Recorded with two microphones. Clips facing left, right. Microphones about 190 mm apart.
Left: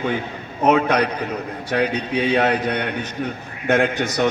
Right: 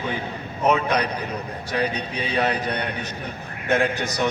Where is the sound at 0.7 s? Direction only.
65° left (ahead or behind).